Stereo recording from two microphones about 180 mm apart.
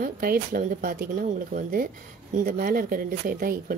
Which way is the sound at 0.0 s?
55° right (ahead or behind).